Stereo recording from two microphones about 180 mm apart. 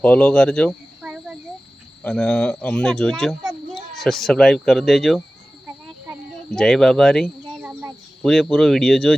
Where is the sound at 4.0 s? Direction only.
Centre (ahead or behind).